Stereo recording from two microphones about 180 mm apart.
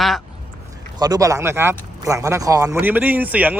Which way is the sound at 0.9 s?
20° right (ahead or behind).